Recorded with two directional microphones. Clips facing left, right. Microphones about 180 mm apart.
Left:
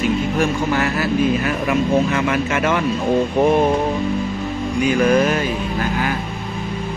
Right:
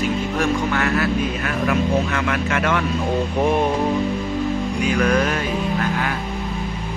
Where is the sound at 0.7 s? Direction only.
5° left (ahead or behind).